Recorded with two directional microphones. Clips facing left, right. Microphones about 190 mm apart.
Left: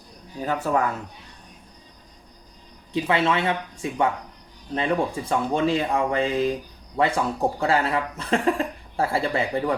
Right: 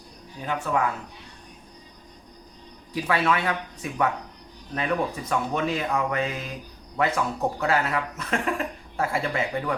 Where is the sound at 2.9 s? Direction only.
25° left (ahead or behind).